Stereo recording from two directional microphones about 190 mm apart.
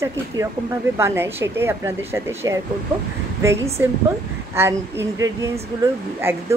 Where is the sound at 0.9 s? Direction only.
15° right (ahead or behind).